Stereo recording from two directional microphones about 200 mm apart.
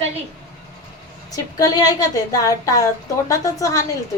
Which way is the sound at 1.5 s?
20° left (ahead or behind).